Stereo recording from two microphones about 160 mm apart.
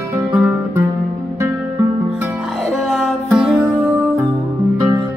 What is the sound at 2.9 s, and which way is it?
Music, centre (ahead or behind).